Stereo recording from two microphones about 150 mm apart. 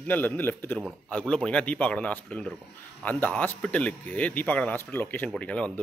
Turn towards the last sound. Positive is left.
turn(degrees=10)  # may be behind; listen again after turning